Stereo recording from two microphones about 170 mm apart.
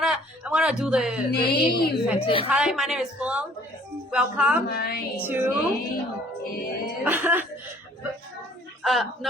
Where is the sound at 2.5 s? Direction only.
Centre (ahead or behind).